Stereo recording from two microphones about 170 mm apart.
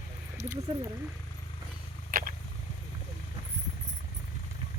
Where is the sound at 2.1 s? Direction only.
60° right (ahead or behind).